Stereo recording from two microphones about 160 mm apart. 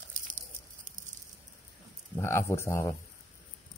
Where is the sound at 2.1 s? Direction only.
15° left (ahead or behind).